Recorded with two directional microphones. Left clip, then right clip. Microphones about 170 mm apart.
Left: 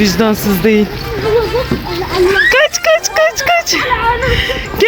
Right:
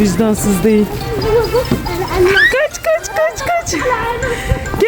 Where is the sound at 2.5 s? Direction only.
Centre (ahead or behind).